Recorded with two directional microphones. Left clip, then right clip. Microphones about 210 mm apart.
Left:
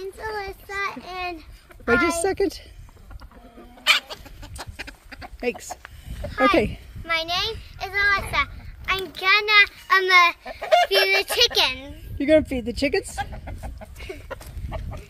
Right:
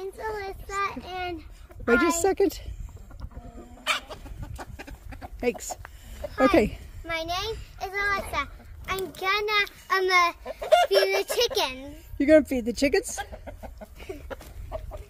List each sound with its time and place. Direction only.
0.0 s child singing: 45° left (ahead or behind)
1.9 s speech: centre (ahead or behind)
3.8 s chicken: 10° left (ahead or behind)
6.3 s a child's voice: centre (ahead or behind)
10.4 s chicken: 60° right (ahead or behind)
10.9 s a child's voice: 10° right (ahead or behind)
12.2 s speech: 5° left (ahead or behind)
13.1 s chicken: 55° right (ahead or behind)